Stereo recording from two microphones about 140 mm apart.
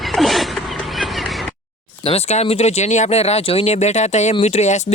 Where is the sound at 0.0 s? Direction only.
Centre (ahead or behind).